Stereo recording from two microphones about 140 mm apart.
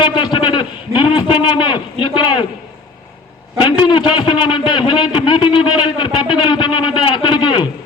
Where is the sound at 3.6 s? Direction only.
35° left (ahead or behind).